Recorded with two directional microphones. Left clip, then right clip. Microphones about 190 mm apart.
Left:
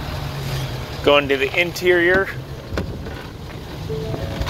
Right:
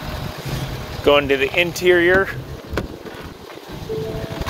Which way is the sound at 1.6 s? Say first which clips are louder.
Right 1 dB; 35° right (ahead or behind).